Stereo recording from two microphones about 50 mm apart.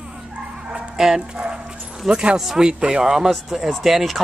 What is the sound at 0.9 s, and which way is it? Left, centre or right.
Speech, centre.